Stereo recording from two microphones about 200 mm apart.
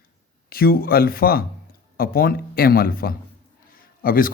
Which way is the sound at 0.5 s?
50° left (ahead or behind).